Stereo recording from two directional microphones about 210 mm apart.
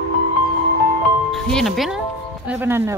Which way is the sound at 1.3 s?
Centre (ahead or behind).